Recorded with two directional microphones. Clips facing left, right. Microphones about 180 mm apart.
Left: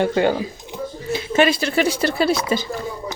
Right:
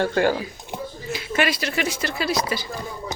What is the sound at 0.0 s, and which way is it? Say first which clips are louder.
Speech: left 2 dB; 20° left (ahead or behind).